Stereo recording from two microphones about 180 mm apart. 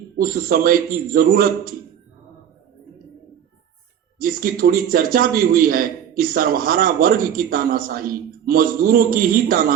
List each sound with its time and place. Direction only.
0.2 s a man's voice: 55° right (ahead or behind)
4.2 s a man's voice: 55° right (ahead or behind)